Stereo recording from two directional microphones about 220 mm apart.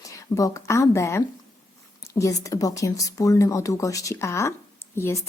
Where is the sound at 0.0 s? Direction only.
15° left (ahead or behind).